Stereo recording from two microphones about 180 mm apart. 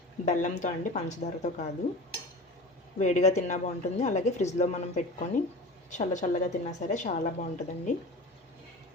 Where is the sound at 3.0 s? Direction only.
40° left (ahead or behind).